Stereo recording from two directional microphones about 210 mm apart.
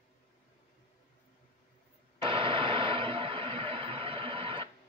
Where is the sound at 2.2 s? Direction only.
25° right (ahead or behind).